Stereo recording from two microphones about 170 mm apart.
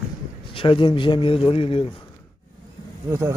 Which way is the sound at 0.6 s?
30° left (ahead or behind).